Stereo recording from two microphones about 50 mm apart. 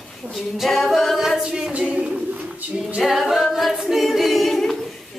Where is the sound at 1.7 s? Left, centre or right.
Right.